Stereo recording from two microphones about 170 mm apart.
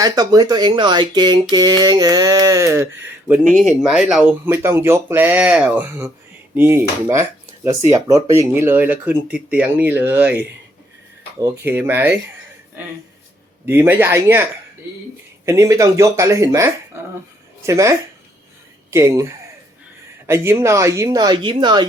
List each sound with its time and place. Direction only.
0.0 s speech: 20° right (ahead or behind)
3.5 s speech: centre (ahead or behind)
11.3 s speech: 15° right (ahead or behind)
13.7 s speech: 15° right (ahead or behind)
15.4 s speech: 20° right (ahead or behind)